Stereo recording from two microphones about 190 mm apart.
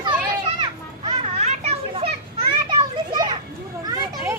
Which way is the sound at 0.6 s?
30° right (ahead or behind).